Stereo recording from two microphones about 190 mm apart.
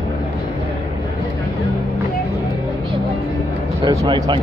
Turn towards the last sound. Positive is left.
turn(degrees=-25)  # may be behind; listen again after turning